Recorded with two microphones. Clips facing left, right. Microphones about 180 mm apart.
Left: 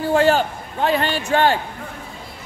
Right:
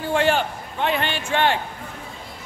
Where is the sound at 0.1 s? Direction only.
40° left (ahead or behind).